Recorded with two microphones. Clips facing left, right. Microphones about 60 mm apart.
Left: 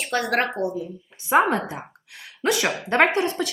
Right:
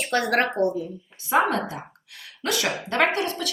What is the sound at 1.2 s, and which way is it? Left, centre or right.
A woman's voice, left.